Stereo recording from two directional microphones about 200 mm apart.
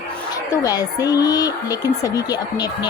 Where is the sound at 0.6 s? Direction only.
20° left (ahead or behind).